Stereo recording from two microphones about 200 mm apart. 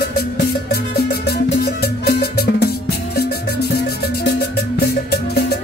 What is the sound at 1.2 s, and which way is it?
Music, 50° left (ahead or behind).